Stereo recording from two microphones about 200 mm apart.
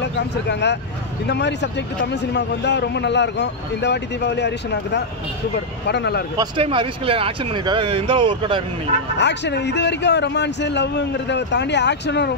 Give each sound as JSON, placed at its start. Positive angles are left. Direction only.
{"t": 0.0, "sound": "a man's voice", "side_deg": 60}
{"t": 6.3, "sound": "speech", "side_deg": -20}
{"t": 9.2, "sound": "a man's voice", "side_deg": 60}